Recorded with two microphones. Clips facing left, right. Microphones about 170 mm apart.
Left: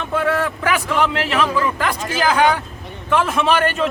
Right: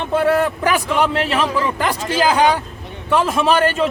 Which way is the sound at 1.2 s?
35° right (ahead or behind).